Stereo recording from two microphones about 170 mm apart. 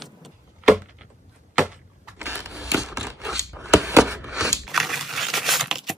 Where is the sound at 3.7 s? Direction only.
15° right (ahead or behind).